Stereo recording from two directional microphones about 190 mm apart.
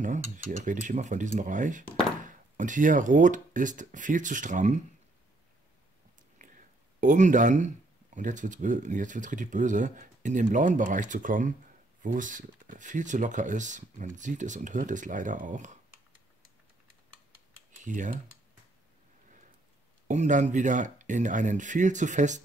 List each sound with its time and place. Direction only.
0.0 s speech: 40° right (ahead or behind)
6.3 s speech: 45° right (ahead or behind)
17.8 s speech: 40° right (ahead or behind)
20.1 s speech: 40° right (ahead or behind)